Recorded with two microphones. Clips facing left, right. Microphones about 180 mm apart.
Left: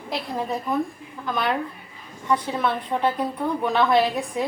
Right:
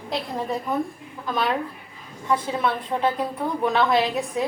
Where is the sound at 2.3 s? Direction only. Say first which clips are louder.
Even; centre (ahead or behind).